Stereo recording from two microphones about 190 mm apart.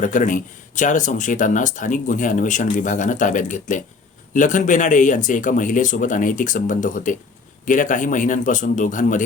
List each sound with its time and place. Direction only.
0.0 s speech: 45° left (ahead or behind)